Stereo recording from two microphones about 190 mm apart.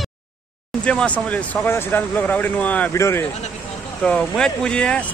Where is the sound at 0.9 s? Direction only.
5° left (ahead or behind).